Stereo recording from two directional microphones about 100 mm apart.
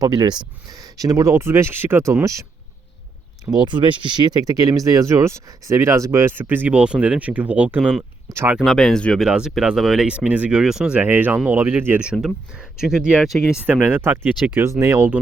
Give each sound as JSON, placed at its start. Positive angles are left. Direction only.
{"t": 0.0, "sound": "speech", "side_deg": -40}
{"t": 3.5, "sound": "speech", "side_deg": -50}
{"t": 7.8, "sound": "speech", "side_deg": -5}
{"t": 8.3, "sound": "speech", "side_deg": -25}
{"t": 8.5, "sound": "speech", "side_deg": 0}
{"t": 9.2, "sound": "speech", "side_deg": -5}
{"t": 11.0, "sound": "speech", "side_deg": -20}
{"t": 12.0, "sound": "speech", "side_deg": -10}
{"t": 13.7, "sound": "speech", "side_deg": -20}